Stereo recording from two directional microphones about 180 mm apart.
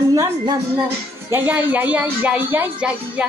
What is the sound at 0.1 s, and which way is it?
Speech, 20° right (ahead or behind).